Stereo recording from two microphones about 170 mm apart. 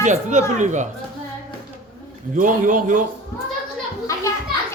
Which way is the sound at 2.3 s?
50° right (ahead or behind).